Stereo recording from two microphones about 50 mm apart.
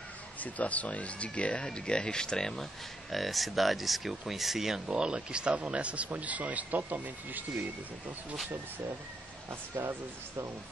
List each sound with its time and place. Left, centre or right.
0.4 s speech: left; by 7.6 s right
9.8 s speech: right